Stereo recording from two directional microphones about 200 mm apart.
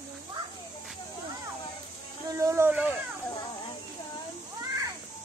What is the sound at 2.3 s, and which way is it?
Speech, 15° right (ahead or behind).